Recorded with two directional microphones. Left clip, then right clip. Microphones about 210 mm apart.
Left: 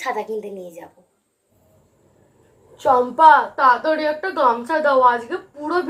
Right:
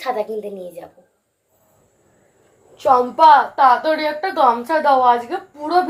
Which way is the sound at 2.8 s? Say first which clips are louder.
Right 1 dB; 10° left (ahead or behind).